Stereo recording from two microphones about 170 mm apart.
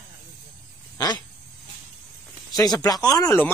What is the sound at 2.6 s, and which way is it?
Speech, 25° left (ahead or behind).